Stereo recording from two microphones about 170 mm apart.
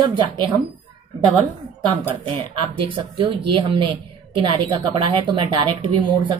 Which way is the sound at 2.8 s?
30° right (ahead or behind).